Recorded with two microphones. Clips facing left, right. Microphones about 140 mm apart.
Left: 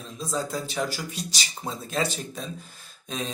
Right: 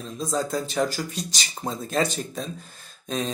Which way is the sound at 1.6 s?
40° right (ahead or behind).